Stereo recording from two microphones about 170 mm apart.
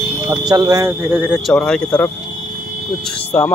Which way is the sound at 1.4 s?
5° left (ahead or behind).